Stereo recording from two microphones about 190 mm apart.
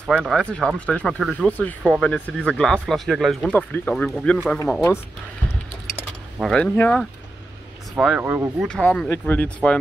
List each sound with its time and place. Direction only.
0.0 s speech: centre (ahead or behind)
6.4 s speech: 5° left (ahead or behind)
7.9 s speech: 5° right (ahead or behind)
8.6 s speech: 5° left (ahead or behind)